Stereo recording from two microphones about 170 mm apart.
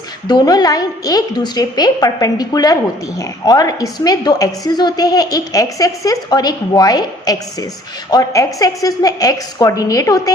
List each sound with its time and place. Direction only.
0.3 s a woman's voice: 25° left (ahead or behind)